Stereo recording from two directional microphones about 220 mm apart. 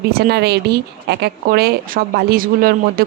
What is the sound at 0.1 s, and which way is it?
Speech, 45° right (ahead or behind).